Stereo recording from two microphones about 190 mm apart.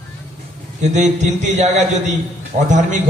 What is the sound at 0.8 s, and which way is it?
A man's voice, 40° right (ahead or behind).